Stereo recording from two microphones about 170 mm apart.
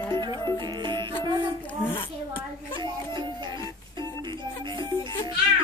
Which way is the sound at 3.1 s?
25° right (ahead or behind).